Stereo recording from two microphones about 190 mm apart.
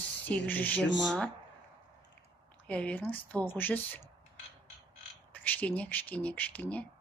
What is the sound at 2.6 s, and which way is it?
A woman's voice, 5° left (ahead or behind).